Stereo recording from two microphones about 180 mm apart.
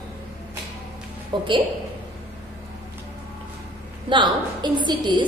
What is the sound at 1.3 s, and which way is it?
Speech, 25° right (ahead or behind).